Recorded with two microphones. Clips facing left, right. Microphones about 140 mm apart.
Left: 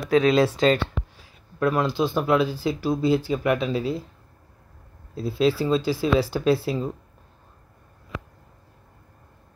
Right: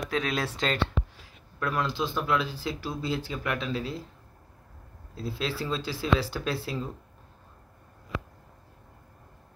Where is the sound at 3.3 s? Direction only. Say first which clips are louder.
Left 8 dB; 15° left (ahead or behind).